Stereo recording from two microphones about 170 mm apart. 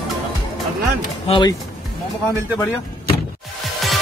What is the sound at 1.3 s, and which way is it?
Speech, 25° left (ahead or behind).